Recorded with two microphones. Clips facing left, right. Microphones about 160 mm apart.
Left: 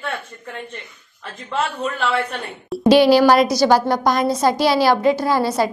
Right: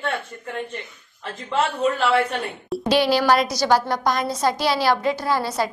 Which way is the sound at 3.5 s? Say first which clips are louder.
Left 4 dB; 35° left (ahead or behind).